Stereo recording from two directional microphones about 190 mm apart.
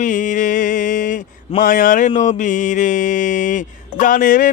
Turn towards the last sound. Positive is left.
turn(degrees=45)  # may be behind; listen again after turning